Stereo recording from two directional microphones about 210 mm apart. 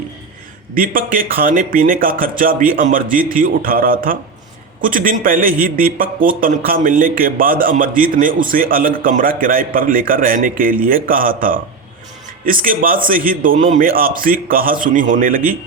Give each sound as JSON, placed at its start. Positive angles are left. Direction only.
{"t": 0.8, "sound": "a man's voice", "side_deg": -40}